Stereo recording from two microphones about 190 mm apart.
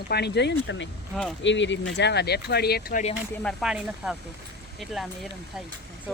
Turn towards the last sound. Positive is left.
turn(degrees=5)  # may be behind; listen again after turning